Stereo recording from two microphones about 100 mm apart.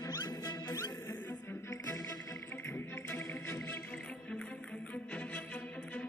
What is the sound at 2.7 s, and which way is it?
Music, 25° left (ahead or behind).